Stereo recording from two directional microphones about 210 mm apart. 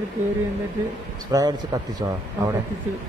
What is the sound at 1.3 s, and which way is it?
Speech, 15° right (ahead or behind).